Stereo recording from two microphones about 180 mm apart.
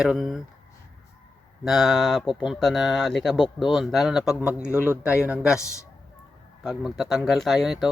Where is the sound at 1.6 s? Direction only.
Centre (ahead or behind).